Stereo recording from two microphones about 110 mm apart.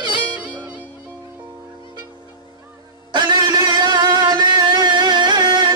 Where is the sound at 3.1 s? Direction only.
40° right (ahead or behind).